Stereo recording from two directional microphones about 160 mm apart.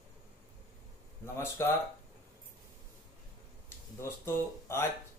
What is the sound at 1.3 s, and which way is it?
Speech, 15° left (ahead or behind).